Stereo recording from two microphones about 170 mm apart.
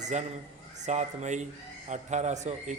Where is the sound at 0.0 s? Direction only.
40° right (ahead or behind).